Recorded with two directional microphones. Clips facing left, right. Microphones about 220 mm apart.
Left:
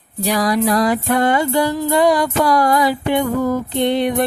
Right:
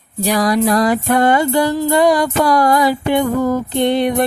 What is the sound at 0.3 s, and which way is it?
Music, 45° right (ahead or behind).